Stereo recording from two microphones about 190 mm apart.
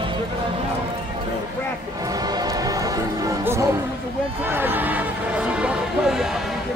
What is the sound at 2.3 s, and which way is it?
Music, 20° right (ahead or behind).